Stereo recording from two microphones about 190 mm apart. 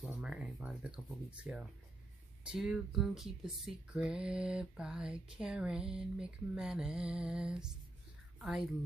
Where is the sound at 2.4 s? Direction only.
5° right (ahead or behind).